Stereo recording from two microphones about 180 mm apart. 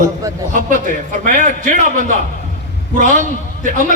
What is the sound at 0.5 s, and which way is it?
A man's voice, 45° right (ahead or behind).